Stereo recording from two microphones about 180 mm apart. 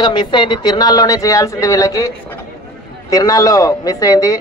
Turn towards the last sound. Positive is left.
turn(degrees=20)  # may be behind; listen again after turning